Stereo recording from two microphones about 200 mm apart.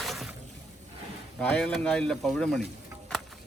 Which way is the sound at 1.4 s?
5° left (ahead or behind).